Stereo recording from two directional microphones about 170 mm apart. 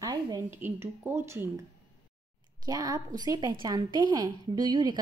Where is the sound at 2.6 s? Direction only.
20° right (ahead or behind).